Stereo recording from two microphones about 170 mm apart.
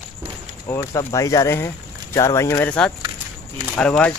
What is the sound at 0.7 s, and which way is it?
Speech, 20° left (ahead or behind).